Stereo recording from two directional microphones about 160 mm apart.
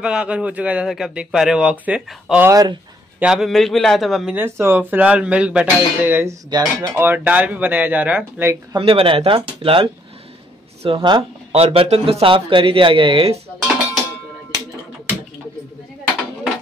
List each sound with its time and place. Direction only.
0.0 s a man's voice: 5° right (ahead or behind)
2.5 s speech: 25° right (ahead or behind)
3.2 s a man's voice: 5° right (ahead or behind)
4.4 s a man's voice: 15° right (ahead or behind)
6.5 s speech: 25° right (ahead or behind)
7.0 s a man's voice: 10° right (ahead or behind)
8.7 s speech: 35° right (ahead or behind)